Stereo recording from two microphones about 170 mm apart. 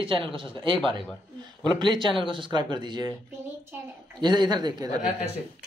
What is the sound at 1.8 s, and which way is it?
Speech, 25° right (ahead or behind).